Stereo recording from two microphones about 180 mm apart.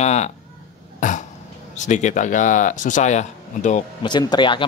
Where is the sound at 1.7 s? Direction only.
40° left (ahead or behind).